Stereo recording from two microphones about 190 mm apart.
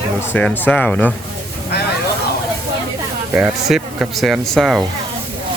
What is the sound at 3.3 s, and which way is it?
Speech, 5° right (ahead or behind).